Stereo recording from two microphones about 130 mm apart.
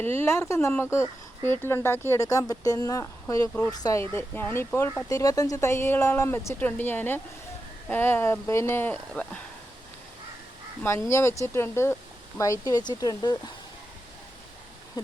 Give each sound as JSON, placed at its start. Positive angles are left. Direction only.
{"t": 0.0, "sound": "speech", "side_deg": 20}
{"t": 4.1, "sound": "speech", "side_deg": 15}
{"t": 10.8, "sound": "speech", "side_deg": 20}
{"t": 15.0, "sound": "speech", "side_deg": 30}